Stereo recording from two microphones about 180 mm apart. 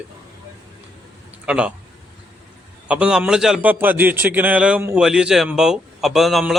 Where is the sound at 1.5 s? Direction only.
5° right (ahead or behind).